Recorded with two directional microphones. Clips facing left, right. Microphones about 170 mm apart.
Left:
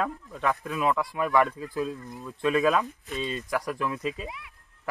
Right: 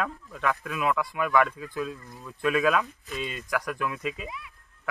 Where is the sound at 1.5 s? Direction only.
35° left (ahead or behind).